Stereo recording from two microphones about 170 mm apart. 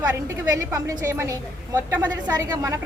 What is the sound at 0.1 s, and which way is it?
A woman's voice, 20° right (ahead or behind).